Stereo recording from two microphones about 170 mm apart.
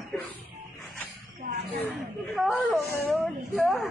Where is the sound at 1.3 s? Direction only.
55° right (ahead or behind).